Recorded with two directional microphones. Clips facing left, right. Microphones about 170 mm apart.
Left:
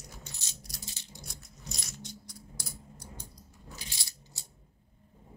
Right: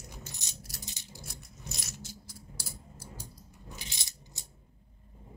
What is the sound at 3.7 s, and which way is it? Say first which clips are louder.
Coin: even; 20° right (ahead or behind).